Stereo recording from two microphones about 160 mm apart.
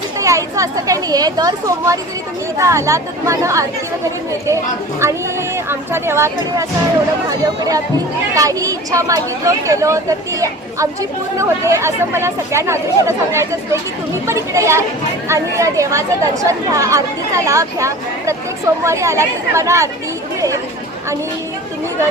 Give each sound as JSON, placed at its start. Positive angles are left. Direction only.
{"t": 0.2, "sound": "speech", "side_deg": -20}
{"t": 4.9, "sound": "speech", "side_deg": -15}